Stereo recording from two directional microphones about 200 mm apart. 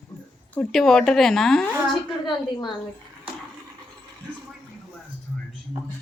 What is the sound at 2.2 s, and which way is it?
Speech, 25° left (ahead or behind).